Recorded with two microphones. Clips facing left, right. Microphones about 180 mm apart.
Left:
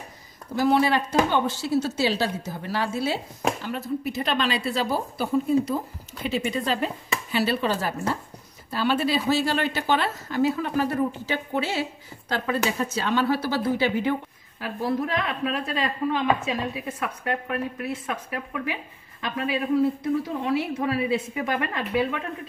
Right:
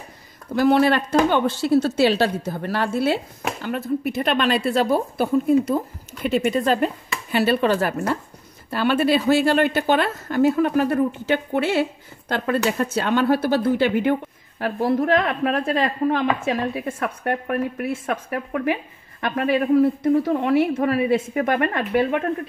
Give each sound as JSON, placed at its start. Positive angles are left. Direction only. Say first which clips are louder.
{"t": 0.6, "sound": "a woman's voice", "louder": "right 4 dB", "side_deg": -65}